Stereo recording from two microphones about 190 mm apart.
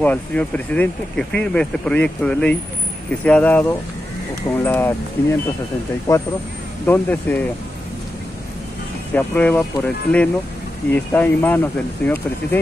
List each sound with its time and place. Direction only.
0.0 s speech: 10° left (ahead or behind)
9.1 s speech: 10° left (ahead or behind)